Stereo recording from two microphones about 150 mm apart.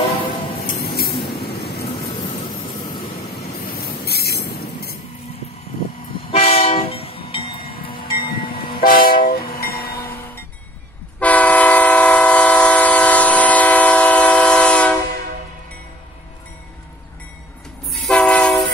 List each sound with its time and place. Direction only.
0.7 s spray: 90° left
3.8 s a sound: 90° left
6.3 s train: 40° left (ahead or behind)
8.7 s train: 70° left (ahead or behind)
11.1 s train: 10° left (ahead or behind)
17.9 s train: 5° left (ahead or behind)